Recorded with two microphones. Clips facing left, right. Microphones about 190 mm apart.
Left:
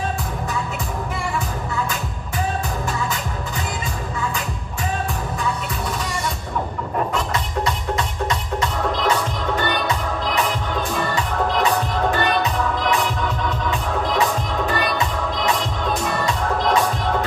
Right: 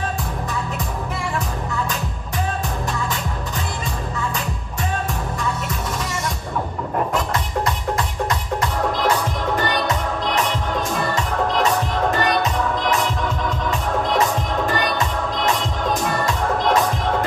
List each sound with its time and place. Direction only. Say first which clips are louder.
8.3 s music: even; 55° right (ahead or behind)